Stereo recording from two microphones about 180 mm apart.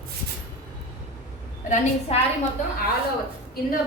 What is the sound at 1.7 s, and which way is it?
Speech, 35° left (ahead or behind).